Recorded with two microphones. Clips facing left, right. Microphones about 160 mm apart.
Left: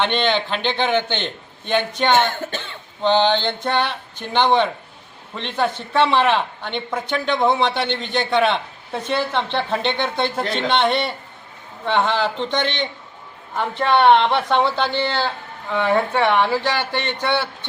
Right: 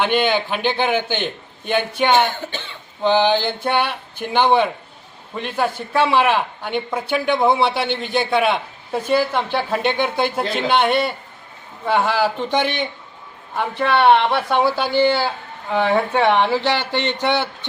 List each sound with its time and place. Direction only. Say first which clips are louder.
0.0 s a man's voice: right 2 dB; 10° right (ahead or behind)